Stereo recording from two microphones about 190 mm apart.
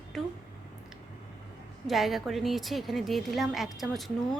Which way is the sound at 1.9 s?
Centre (ahead or behind).